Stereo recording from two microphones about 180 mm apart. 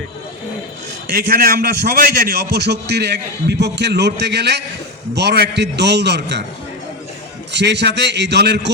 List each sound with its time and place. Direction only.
1.0 s a man's voice: 55° right (ahead or behind); by 6.4 s 70° right (ahead or behind)
7.5 s a man's voice: 70° right (ahead or behind)